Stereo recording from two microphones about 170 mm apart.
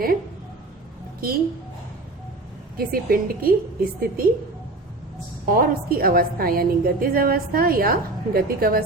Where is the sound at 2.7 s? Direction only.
60° right (ahead or behind).